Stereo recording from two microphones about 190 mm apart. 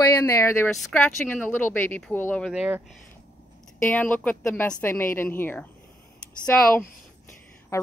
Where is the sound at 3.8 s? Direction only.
10° left (ahead or behind).